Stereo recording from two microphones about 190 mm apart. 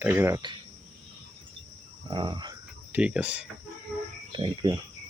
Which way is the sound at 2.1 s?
25° right (ahead or behind).